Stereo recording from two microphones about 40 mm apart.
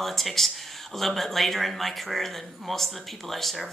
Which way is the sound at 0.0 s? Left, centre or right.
Centre.